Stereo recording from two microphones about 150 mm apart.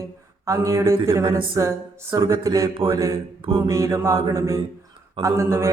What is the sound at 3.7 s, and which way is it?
Speech, 20° right (ahead or behind).